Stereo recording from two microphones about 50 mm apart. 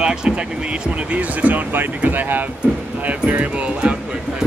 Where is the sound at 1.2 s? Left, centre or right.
Right.